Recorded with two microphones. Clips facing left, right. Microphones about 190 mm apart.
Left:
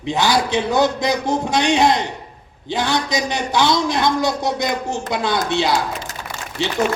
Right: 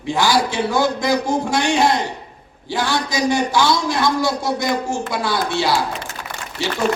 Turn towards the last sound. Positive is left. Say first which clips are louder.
# left 1 dB
turn(degrees=20)  # may be behind; listen again after turning